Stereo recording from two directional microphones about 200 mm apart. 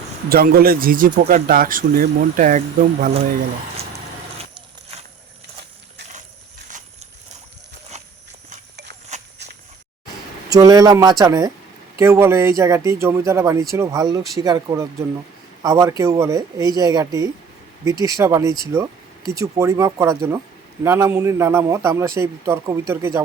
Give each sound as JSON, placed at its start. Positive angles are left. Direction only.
{"t": 0.3, "sound": "a man's voice", "side_deg": -50}
{"t": 9.4, "sound": "walk", "side_deg": -60}
{"t": 10.5, "sound": "speech", "side_deg": -20}